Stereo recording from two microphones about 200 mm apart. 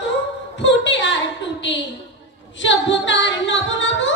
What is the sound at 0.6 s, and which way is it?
A woman's voice, 65° left (ahead or behind).